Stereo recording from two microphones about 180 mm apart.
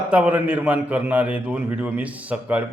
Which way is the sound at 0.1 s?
5° right (ahead or behind).